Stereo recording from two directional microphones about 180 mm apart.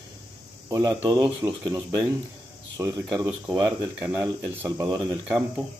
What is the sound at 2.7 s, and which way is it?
Speech, 20° right (ahead or behind).